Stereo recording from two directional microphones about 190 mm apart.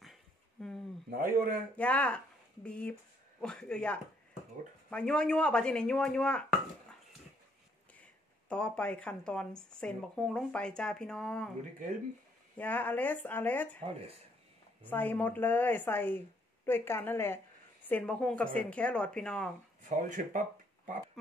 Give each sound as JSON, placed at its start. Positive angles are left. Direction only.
{"t": 0.0, "sound": "a sound", "side_deg": 0}
{"t": 1.1, "sound": "speech", "side_deg": -45}
{"t": 1.8, "sound": "speech", "side_deg": 5}
{"t": 8.5, "sound": "speech", "side_deg": 5}
{"t": 12.5, "sound": "a woman's voice", "side_deg": 10}
{"t": 19.8, "sound": "speech", "side_deg": -45}